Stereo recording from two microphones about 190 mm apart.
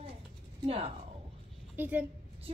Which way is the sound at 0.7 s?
30° right (ahead or behind).